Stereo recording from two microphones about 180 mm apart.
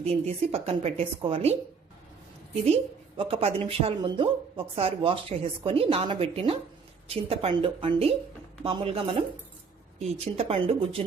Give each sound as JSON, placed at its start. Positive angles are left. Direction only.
{"t": 0.0, "sound": "a woman's voice", "side_deg": -35}
{"t": 2.6, "sound": "a woman's voice", "side_deg": -35}